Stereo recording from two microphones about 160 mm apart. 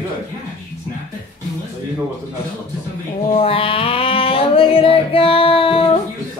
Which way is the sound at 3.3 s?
35° left (ahead or behind).